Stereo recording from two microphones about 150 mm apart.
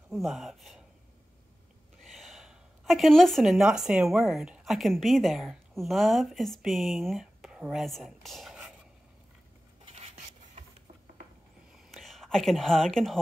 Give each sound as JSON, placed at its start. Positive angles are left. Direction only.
{"t": 0.1, "sound": "speech", "side_deg": 0}
{"t": 2.0, "sound": "speech", "side_deg": 0}
{"t": 9.8, "sound": "dishes", "side_deg": -45}
{"t": 11.7, "sound": "a sound", "side_deg": 0}